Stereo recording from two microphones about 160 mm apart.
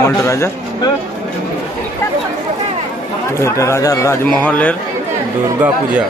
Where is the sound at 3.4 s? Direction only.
20° left (ahead or behind).